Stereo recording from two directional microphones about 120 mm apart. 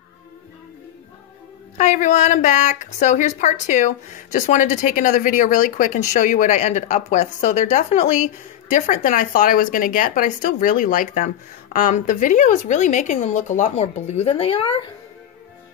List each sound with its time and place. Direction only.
1.8 s a woman's voice: 85° left; by 14.9 s 50° left (ahead or behind)